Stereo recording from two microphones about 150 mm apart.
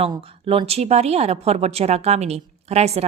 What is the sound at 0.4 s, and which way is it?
A woman's voice, 40° right (ahead or behind).